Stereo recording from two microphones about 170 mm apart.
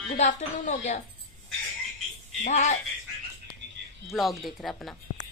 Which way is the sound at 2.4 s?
45° left (ahead or behind).